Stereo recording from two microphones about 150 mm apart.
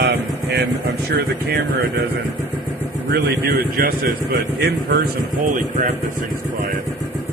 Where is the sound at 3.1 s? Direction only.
85° right.